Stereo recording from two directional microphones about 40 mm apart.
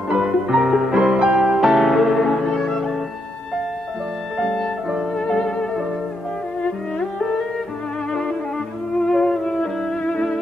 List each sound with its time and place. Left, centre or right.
0.1 s music: centre
1.6 s music: centre
4.4 s music: centre
9.0 s music: centre